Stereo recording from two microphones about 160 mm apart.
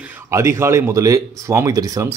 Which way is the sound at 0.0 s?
15° right (ahead or behind).